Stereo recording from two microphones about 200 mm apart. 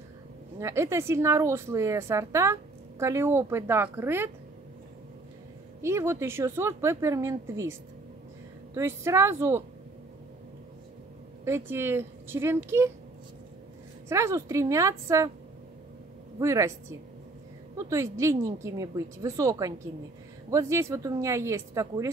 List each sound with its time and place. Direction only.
0.6 s a woman's voice: 15° right (ahead or behind)
5.8 s a woman's voice: 15° right (ahead or behind)
8.7 s a woman's voice: 15° right (ahead or behind)
11.4 s a woman's voice: 10° right (ahead or behind)
14.0 s a woman's voice: 15° right (ahead or behind)
16.3 s a woman's voice: 15° right (ahead or behind)
17.7 s a woman's voice: 15° right (ahead or behind)